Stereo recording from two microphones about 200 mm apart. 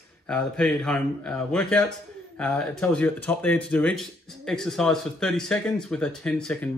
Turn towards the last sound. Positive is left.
turn(degrees=5)  # may be behind; listen again after turning